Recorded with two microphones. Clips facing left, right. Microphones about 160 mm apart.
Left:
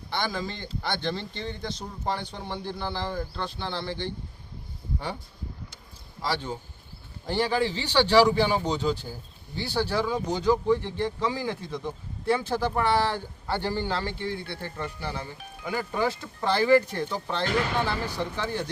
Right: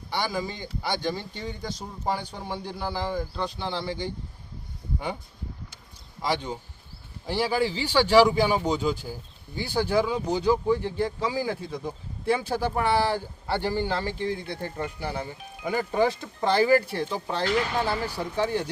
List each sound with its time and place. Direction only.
0.1 s speech: 10° right (ahead or behind)
6.2 s speech: 15° right (ahead or behind)